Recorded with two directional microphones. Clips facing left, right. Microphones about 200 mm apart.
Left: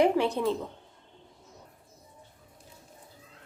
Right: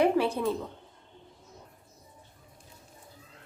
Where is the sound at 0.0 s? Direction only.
15° left (ahead or behind).